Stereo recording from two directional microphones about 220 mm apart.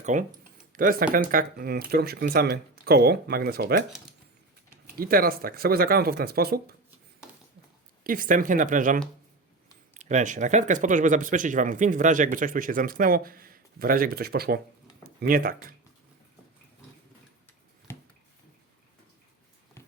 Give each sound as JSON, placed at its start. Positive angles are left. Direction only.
{"t": 0.0, "sound": "speech", "side_deg": -35}
{"t": 4.9, "sound": "speech", "side_deg": -40}
{"t": 8.0, "sound": "speech", "side_deg": -40}
{"t": 17.9, "sound": "a sound", "side_deg": 10}